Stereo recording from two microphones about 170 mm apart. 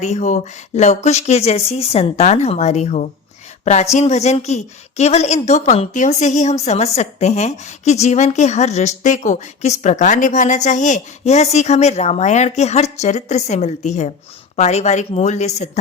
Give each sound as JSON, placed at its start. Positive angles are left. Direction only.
{"t": 0.0, "sound": "a woman's voice", "side_deg": 45}